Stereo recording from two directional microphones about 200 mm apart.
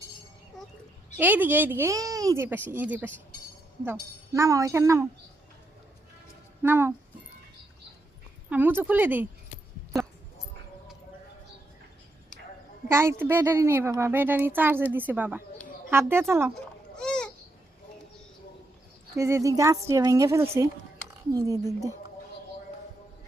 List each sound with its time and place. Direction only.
1.1 s a child's voice: 10° right (ahead or behind)
6.6 s a child's voice: 10° right (ahead or behind)
8.4 s a child's voice: 10° right (ahead or behind)
12.9 s a child's voice: 10° right (ahead or behind)
17.0 s a sound: 5° left (ahead or behind)
19.1 s a child's voice: 15° right (ahead or behind)